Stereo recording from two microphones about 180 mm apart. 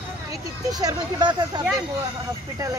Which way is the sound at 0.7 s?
20° right (ahead or behind).